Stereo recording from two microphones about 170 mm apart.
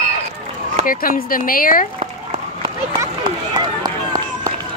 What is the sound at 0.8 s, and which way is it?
Speech, 55° left (ahead or behind).